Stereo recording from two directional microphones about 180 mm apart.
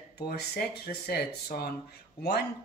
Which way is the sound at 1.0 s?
60° left (ahead or behind).